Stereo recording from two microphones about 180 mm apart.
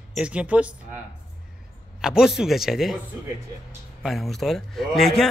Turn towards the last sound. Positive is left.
turn(degrees=0)  # may be behind; listen again after turning